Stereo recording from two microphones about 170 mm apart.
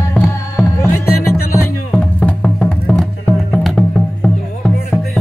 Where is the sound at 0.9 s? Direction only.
15° left (ahead or behind).